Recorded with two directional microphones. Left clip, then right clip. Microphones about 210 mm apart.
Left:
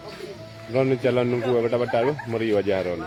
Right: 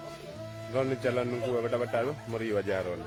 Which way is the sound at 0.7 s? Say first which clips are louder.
Left 8 dB; 10° right (ahead or behind).